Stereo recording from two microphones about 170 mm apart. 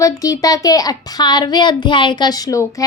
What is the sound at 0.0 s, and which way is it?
Speech, 20° left (ahead or behind).